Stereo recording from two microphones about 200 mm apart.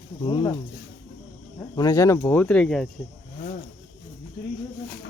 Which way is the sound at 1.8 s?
15° left (ahead or behind).